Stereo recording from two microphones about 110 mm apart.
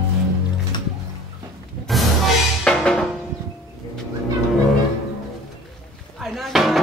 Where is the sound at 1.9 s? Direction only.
Centre (ahead or behind).